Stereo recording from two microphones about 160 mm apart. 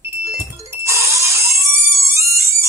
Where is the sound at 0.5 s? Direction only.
20° right (ahead or behind).